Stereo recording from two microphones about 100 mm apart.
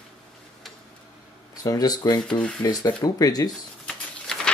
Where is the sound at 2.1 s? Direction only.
10° left (ahead or behind).